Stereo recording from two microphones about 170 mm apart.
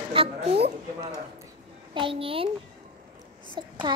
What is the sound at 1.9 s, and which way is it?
Speech, 30° right (ahead or behind).